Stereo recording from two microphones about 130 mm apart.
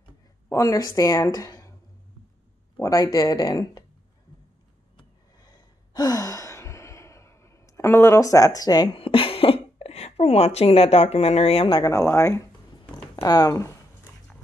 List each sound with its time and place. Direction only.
0.5 s a woman's voice: 25° left (ahead or behind)
2.8 s a woman's voice: 25° left (ahead or behind)
5.9 s sigh: 30° left (ahead or behind)
8.9 s speech: 45° left (ahead or behind)
11.8 s a woman's voice: 25° left (ahead or behind)
12.9 s a sound: 30° left (ahead or behind)